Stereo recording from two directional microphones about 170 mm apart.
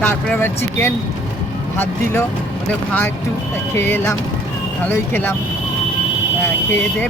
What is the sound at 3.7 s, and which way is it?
Speech, 15° left (ahead or behind).